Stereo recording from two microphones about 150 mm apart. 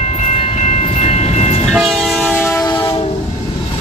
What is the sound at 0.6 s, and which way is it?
Train, 50° left (ahead or behind).